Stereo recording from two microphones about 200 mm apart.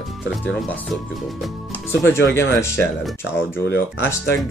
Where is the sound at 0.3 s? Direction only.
Centre (ahead or behind).